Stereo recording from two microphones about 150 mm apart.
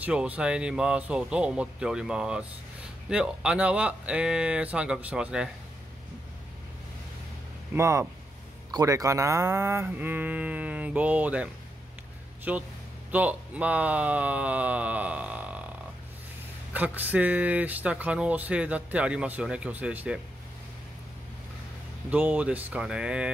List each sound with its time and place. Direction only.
0.0 s speech: 10° right (ahead or behind)
7.7 s speech: 15° right (ahead or behind)
16.7 s speech: 10° right (ahead or behind)
22.1 s speech: 10° right (ahead or behind)